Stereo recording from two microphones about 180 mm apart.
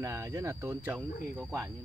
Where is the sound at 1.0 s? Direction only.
Centre (ahead or behind).